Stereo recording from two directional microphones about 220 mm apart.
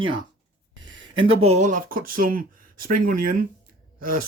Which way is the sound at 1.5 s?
30° right (ahead or behind).